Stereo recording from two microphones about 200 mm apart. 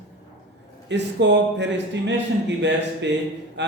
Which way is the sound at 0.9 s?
60° right (ahead or behind).